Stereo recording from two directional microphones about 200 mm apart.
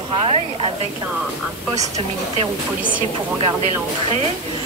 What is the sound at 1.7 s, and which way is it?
Speech, 15° right (ahead or behind).